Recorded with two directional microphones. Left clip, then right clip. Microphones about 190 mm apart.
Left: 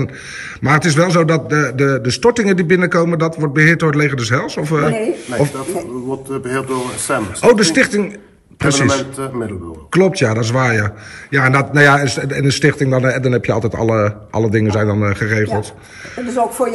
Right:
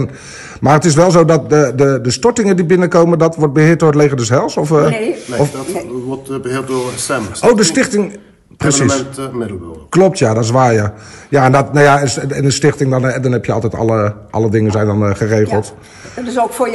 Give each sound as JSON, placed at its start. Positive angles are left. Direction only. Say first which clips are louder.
{"t": 0.6, "sound": "a man's voice", "louder": "right 4 dB", "side_deg": -15}
{"t": 4.9, "sound": "a man's voice", "louder": "right 2 dB", "side_deg": 0}
{"t": 16.3, "sound": "speech", "louder": "right 2 dB", "side_deg": 0}